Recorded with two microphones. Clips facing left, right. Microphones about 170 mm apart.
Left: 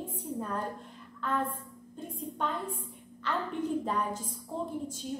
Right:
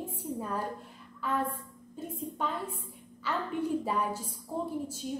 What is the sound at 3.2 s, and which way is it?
A woman's voice, 10° right (ahead or behind).